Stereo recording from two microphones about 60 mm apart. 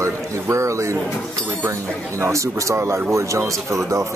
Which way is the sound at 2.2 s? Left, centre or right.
Right.